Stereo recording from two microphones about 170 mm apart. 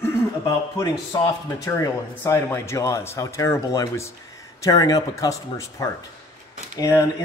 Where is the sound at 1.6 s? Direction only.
15° left (ahead or behind).